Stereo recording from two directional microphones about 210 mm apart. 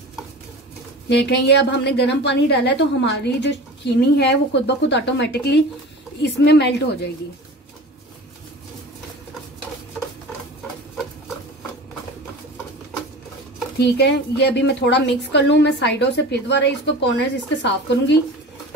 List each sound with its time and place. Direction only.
1.0 s a woman's voice: 55° left (ahead or behind)
13.7 s a woman's voice: 50° left (ahead or behind)